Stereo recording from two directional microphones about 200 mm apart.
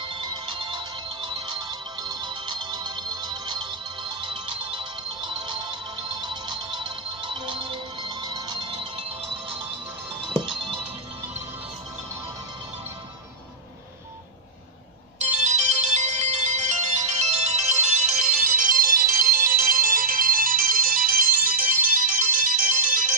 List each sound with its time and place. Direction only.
0.1 s music: 25° right (ahead or behind)
15.2 s ringtone: 35° right (ahead or behind)